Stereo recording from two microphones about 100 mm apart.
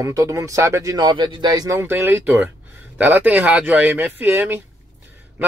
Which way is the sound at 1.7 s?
25° right (ahead or behind).